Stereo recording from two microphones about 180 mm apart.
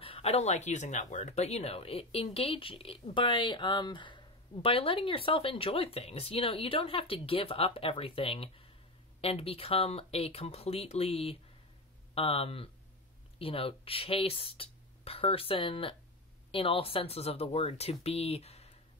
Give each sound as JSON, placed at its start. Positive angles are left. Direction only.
{"t": 0.0, "sound": "speech", "side_deg": 30}